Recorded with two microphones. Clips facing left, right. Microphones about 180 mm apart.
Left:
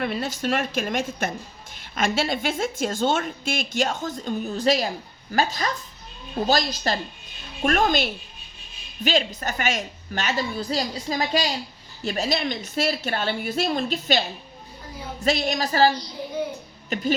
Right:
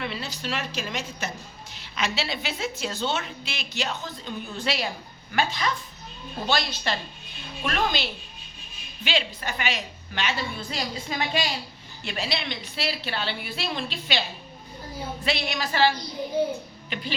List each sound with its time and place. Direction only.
0.0 s a woman's voice: 50° left (ahead or behind)